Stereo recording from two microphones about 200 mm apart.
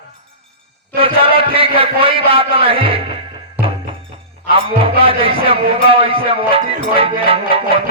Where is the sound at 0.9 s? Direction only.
25° right (ahead or behind).